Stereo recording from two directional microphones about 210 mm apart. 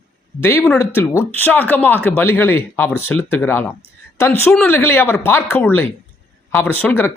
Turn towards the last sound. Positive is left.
turn(degrees=10)  # may be behind; listen again after turning